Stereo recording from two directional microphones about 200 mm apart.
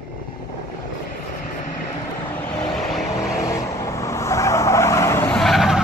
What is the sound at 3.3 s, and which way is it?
Vehicle, 15° left (ahead or behind).